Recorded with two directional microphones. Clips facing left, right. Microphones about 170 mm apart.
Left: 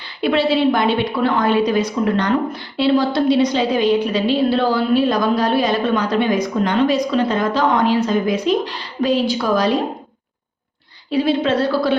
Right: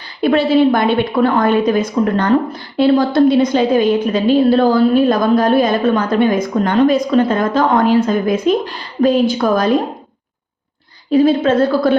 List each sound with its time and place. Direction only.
0.2 s a woman's voice: 45° right (ahead or behind)
11.1 s a woman's voice: 45° right (ahead or behind)